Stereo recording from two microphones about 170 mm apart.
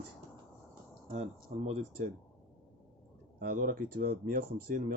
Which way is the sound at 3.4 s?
55° right (ahead or behind).